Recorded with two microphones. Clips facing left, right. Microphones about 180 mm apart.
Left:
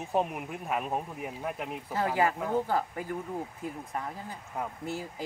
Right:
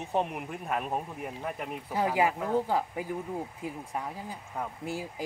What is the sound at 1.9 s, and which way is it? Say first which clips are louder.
Speech: right 1 dB; 10° right (ahead or behind).